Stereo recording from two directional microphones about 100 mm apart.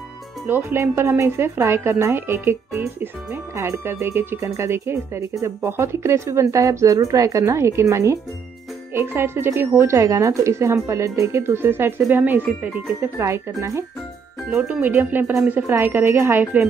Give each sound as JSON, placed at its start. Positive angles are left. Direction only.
{"t": 0.5, "sound": "speech", "side_deg": -25}
{"t": 14.6, "sound": "speech", "side_deg": -15}